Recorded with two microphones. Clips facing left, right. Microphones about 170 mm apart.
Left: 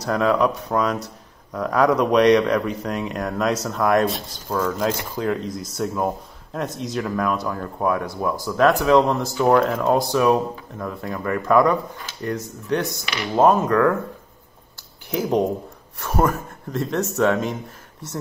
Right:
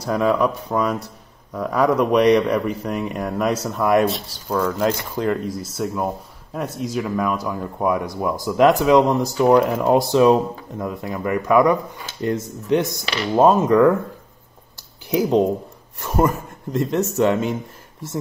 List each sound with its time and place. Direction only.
0.0 s speech: 5° right (ahead or behind)
13.0 s speech: 30° right (ahead or behind)
13.4 s speech: 15° right (ahead or behind)
16.7 s speech: 10° right (ahead or behind)